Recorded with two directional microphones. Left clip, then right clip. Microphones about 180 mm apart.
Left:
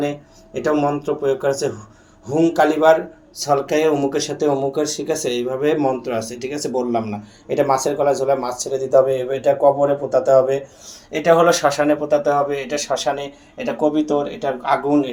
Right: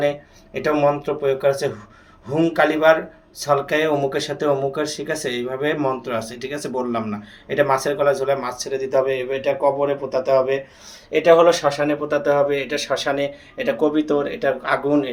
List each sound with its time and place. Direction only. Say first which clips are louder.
0.6 s a man's voice: right 1 dB; 15° right (ahead or behind)
6.6 s speech: left 4 dB; 80° right
7.4 s a man's voice: left 1 dB; 10° right (ahead or behind)
9.4 s speech: left 5 dB; 45° right (ahead or behind)
11.1 s a man's voice: right 1 dB; centre (ahead or behind)